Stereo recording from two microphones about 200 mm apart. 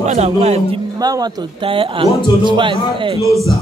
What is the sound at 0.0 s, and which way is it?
Speech, 35° right (ahead or behind).